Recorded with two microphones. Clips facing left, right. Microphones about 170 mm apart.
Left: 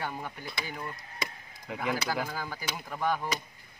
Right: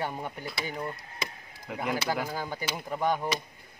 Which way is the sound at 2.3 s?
20° right (ahead or behind).